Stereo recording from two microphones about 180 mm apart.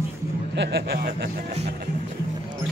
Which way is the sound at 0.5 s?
70° right (ahead or behind).